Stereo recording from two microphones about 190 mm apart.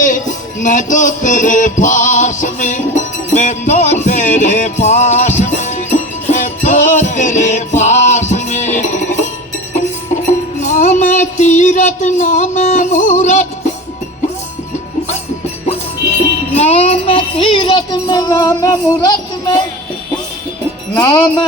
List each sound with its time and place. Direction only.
0.0 s music: 40° left (ahead or behind)
10.6 s music: 40° left (ahead or behind)
16.6 s child singing: 35° left (ahead or behind)
21.0 s wind chime: 20° left (ahead or behind)